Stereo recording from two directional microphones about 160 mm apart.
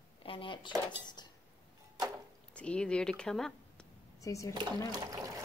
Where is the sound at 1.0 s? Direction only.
25° left (ahead or behind).